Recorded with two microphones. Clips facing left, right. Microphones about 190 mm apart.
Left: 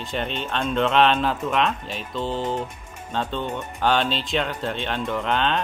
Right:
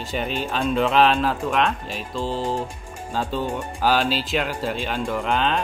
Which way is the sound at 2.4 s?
30° right (ahead or behind).